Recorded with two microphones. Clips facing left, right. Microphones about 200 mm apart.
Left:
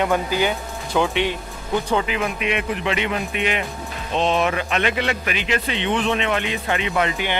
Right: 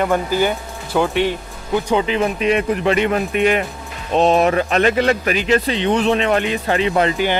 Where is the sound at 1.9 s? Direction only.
25° right (ahead or behind).